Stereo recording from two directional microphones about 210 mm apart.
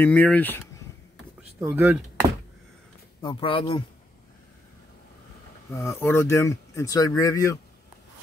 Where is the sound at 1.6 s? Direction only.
10° right (ahead or behind).